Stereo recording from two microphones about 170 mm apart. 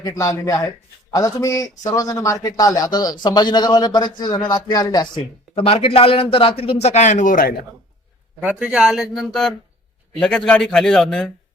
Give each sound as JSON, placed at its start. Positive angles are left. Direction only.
{"t": 0.0, "sound": "a man's voice", "side_deg": 20}
{"t": 8.4, "sound": "speech", "side_deg": -10}